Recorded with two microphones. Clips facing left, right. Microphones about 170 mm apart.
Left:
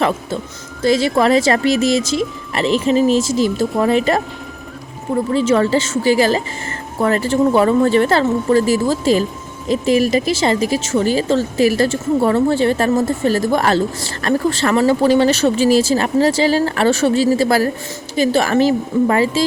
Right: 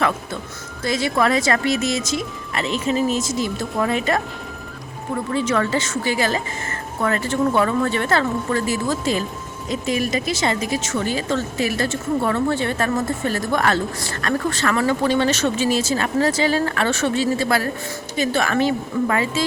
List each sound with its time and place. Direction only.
0.8 s a woman's voice: 30° left (ahead or behind)
5.3 s a woman's voice: 30° left (ahead or behind)